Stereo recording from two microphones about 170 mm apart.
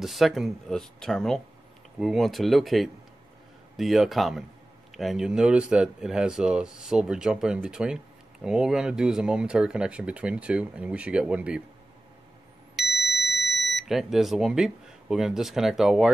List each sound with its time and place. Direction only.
0.0 s speech: centre (ahead or behind)
12.7 s a sound: centre (ahead or behind)
13.1 s speech: centre (ahead or behind)